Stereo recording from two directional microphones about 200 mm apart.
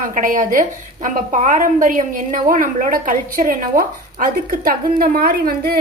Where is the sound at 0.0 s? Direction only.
40° right (ahead or behind).